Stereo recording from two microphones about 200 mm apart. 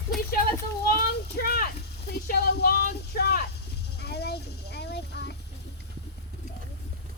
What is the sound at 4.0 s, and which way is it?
Sheep, 55° left (ahead or behind).